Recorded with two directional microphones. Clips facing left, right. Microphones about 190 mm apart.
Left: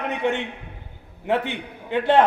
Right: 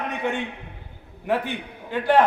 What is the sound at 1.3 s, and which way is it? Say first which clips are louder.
Speech: left 1 dB; 25° left (ahead or behind).